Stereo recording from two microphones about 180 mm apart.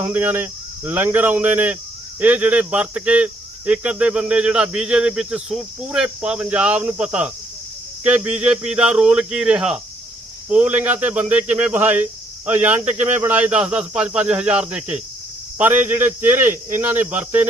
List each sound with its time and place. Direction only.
0.0 s speech: 10° right (ahead or behind)
12.8 s speech: 40° right (ahead or behind)
13.2 s speech: 10° right (ahead or behind)